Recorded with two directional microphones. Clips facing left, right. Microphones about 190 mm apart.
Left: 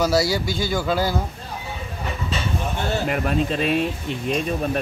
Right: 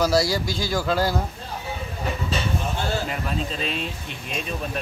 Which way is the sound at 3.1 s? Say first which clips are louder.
Left 6 dB; 55° left (ahead or behind).